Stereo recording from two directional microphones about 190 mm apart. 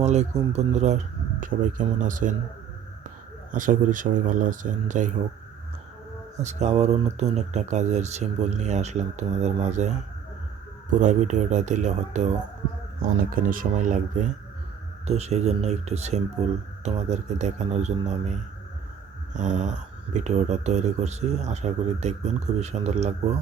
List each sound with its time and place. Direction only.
0.0 s speech: 35° right (ahead or behind)
3.5 s speech: 45° right (ahead or behind)
6.3 s speech: 35° right (ahead or behind)
11.0 s speech: 40° right (ahead or behind)
13.0 s speech: 50° right (ahead or behind)